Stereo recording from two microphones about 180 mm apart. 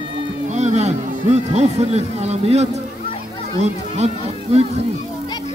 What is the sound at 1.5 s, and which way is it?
Speech, 35° right (ahead or behind).